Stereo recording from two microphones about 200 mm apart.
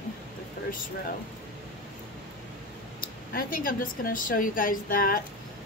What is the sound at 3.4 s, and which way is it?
A woman's voice, 45° left (ahead or behind).